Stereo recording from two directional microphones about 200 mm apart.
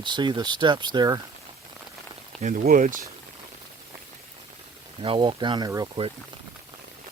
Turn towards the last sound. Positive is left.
turn(degrees=-25)  # may be behind; listen again after turning